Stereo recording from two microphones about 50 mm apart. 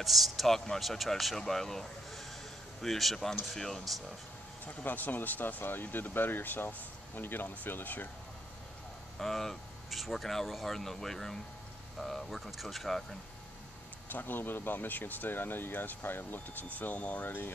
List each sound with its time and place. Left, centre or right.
0.0 s speech: centre
4.6 s speech: left
9.2 s speech: centre
14.0 s speech: left